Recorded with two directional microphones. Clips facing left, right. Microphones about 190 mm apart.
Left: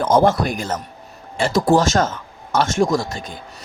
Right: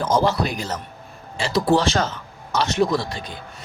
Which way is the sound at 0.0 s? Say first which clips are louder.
Left 4 dB; 55° left (ahead or behind).